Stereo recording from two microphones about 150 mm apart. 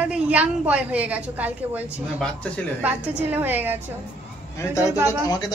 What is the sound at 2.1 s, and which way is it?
Speech, 5° left (ahead or behind).